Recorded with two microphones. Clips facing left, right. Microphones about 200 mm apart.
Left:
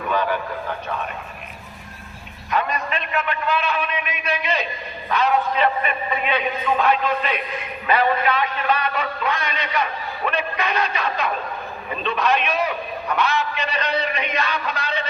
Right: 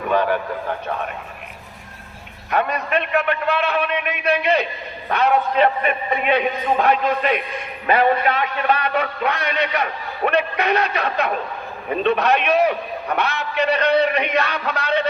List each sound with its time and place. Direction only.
0.1 s a man's voice: 55° right (ahead or behind)
2.5 s a man's voice: 60° right (ahead or behind)
7.9 s a man's voice: 45° right (ahead or behind); by 15.0 s 65° right (ahead or behind)